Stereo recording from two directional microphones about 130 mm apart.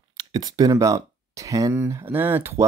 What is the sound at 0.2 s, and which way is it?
Speech, 30° right (ahead or behind).